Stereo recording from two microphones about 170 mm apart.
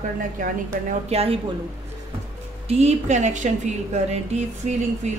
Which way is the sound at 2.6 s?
40° right (ahead or behind).